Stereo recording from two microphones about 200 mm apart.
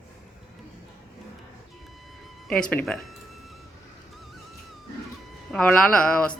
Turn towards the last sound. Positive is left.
turn(degrees=5)  # may be behind; listen again after turning